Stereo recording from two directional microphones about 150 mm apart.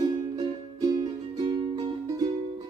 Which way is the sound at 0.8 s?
25° right (ahead or behind).